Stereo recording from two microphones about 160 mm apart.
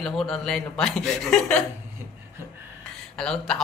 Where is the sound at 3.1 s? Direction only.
5° left (ahead or behind).